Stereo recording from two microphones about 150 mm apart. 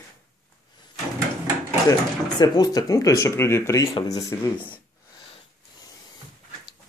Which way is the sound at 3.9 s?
35° left (ahead or behind).